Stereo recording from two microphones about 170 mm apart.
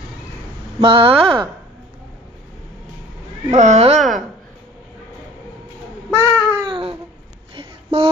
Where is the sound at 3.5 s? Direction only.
40° right (ahead or behind).